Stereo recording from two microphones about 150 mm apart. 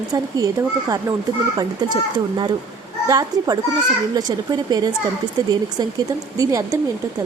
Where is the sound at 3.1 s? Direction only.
25° right (ahead or behind).